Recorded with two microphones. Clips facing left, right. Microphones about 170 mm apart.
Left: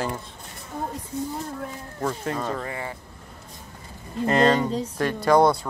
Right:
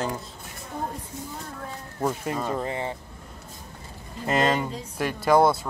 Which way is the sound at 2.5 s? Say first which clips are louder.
Right 3 dB; 25° right (ahead or behind).